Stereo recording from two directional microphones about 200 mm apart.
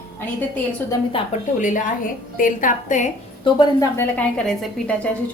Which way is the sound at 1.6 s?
40° left (ahead or behind).